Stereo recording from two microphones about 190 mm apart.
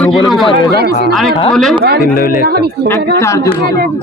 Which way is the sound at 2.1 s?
50° left (ahead or behind).